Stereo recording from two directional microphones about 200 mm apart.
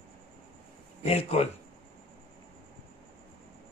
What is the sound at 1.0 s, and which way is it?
Speech, 30° left (ahead or behind).